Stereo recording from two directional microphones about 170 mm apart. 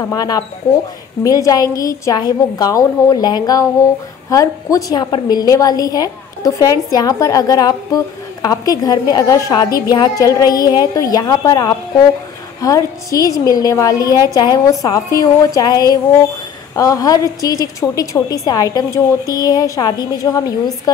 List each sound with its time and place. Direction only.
0.0 s a woman's voice: 20° left (ahead or behind)